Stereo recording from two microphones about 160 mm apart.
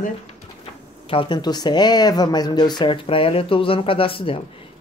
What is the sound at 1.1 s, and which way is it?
Speech, 30° left (ahead or behind).